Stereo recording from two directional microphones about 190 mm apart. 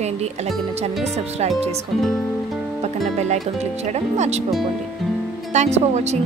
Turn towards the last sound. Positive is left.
turn(degrees=-35)  # may be behind; listen again after turning